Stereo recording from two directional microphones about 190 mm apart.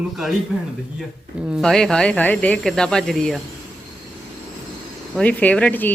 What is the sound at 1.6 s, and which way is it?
Speech, 5° left (ahead or behind).